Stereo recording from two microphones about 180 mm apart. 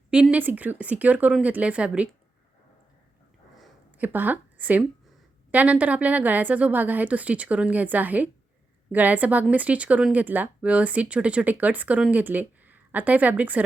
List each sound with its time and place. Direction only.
0.1 s speech: 5° right (ahead or behind)
3.6 s a sound: 10° right (ahead or behind)
5.5 s speech: 10° right (ahead or behind)